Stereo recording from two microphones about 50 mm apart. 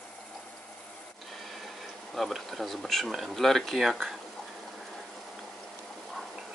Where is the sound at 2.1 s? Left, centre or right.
Centre.